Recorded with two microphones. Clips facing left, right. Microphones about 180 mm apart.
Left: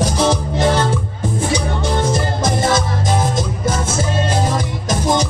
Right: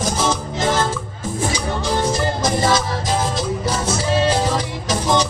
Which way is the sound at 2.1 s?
50° left (ahead or behind).